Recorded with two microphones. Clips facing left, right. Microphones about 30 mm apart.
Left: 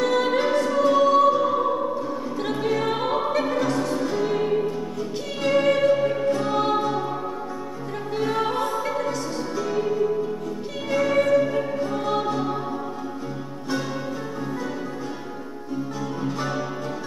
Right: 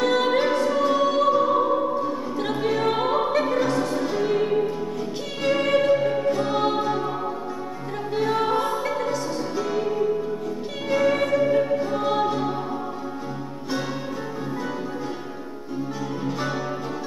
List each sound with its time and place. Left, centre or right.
0.0 s music: centre
2.9 s opera: centre
5.4 s music: centre
8.1 s music: centre